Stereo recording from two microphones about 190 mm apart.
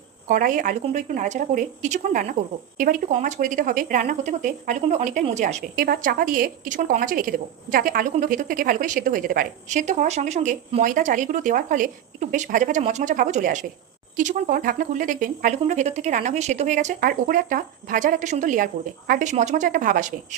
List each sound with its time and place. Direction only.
0.3 s a woman's voice: 45° right (ahead or behind)